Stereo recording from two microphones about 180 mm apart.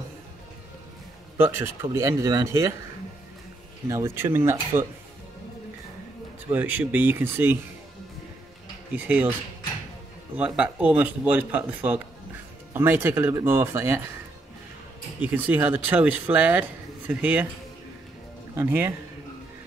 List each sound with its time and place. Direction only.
1.4 s speech: 15° right (ahead or behind)
3.9 s speech: 15° right (ahead or behind)
6.4 s speech: 10° right (ahead or behind)
8.9 s speech: 10° right (ahead or behind)
10.3 s speech: 5° right (ahead or behind)
15.1 s speech: 10° right (ahead or behind)
18.5 s speech: 10° right (ahead or behind)